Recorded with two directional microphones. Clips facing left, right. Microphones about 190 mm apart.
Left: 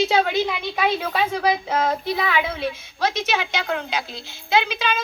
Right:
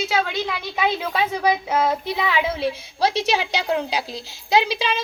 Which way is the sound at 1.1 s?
10° right (ahead or behind).